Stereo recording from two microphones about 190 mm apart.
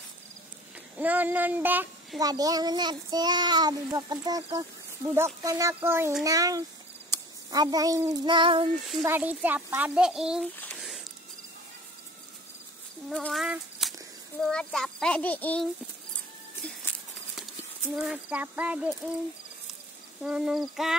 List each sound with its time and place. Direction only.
0.9 s child singing: 10° right (ahead or behind)
6.2 s a child's voice: 20° right (ahead or behind)
7.5 s child singing: 20° right (ahead or behind)
9.0 s a child's voice: 10° right (ahead or behind)
13.1 s speech: centre (ahead or behind)
17.9 s speech: 5° right (ahead or behind)
20.2 s speech: 5° right (ahead or behind)